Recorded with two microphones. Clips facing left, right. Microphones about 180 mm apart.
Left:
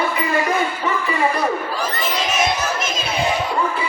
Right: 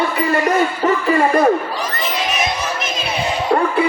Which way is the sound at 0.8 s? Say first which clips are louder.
Right 5 dB; 45° right (ahead or behind).